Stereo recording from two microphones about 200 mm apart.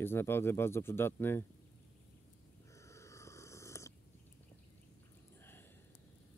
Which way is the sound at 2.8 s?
15° left (ahead or behind).